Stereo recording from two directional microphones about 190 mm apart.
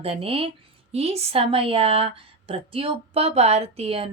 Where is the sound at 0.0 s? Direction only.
30° right (ahead or behind).